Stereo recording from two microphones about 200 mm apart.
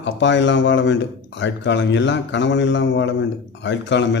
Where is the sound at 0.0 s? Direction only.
65° left (ahead or behind).